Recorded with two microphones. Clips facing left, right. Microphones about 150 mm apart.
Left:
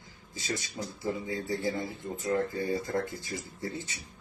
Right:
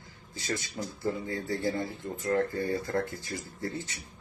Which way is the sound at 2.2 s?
20° left (ahead or behind).